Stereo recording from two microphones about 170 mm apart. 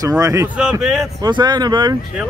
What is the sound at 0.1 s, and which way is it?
Speech, 15° right (ahead or behind).